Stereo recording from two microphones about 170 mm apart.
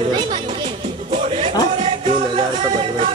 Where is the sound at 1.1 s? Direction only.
35° right (ahead or behind).